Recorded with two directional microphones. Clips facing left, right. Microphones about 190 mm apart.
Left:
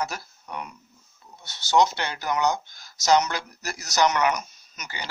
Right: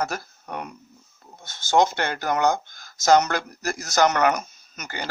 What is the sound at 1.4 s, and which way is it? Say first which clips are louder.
Speech: right 1 dB; 50° right (ahead or behind).